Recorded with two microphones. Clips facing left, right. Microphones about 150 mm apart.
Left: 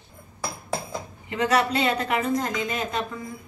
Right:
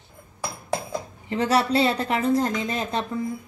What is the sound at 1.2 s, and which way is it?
A woman's voice, 35° right (ahead or behind).